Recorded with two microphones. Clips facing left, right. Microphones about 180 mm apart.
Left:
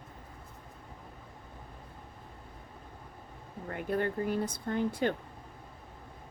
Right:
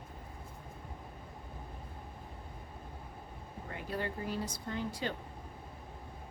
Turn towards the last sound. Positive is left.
turn(degrees=55)  # may be behind; listen again after turning